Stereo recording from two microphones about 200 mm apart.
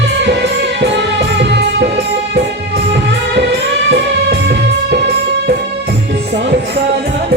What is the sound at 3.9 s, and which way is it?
Music, 55° right (ahead or behind).